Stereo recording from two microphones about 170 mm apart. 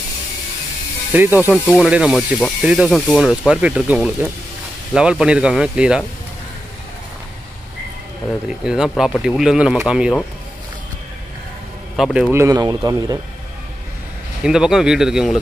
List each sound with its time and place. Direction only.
1.1 s speech: 10° right (ahead or behind)
8.3 s speech: 5° right (ahead or behind)
12.0 s speech: 5° right (ahead or behind)
12.4 s speech: 20° right (ahead or behind)
14.4 s speech: 5° right (ahead or behind)